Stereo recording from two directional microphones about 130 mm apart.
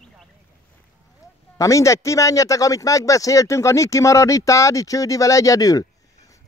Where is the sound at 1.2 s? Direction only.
25° left (ahead or behind).